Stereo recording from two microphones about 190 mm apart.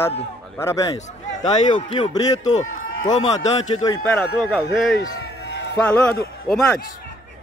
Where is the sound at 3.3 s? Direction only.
20° left (ahead or behind).